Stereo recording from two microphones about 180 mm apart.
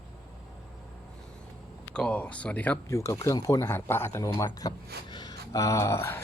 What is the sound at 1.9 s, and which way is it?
Speech, 5° left (ahead or behind).